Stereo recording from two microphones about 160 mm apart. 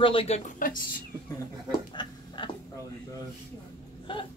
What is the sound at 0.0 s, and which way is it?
Speech, 35° left (ahead or behind).